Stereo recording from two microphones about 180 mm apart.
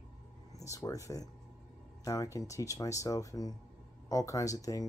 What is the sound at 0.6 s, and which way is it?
Speech, 15° left (ahead or behind).